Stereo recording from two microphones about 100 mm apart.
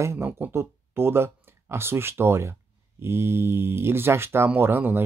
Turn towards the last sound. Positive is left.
turn(degrees=-20)  # may be behind; listen again after turning